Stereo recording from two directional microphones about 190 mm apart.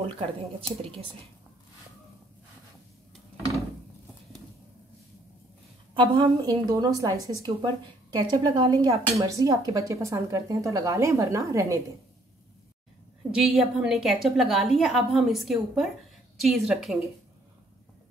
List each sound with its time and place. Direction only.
5.9 s a woman's voice: 25° right (ahead or behind)
9.3 s a woman's voice: 20° right (ahead or behind)
13.3 s a woman's voice: 5° right (ahead or behind)